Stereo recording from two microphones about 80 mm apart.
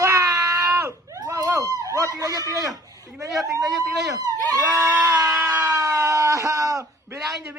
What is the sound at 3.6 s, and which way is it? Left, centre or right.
Speech, centre.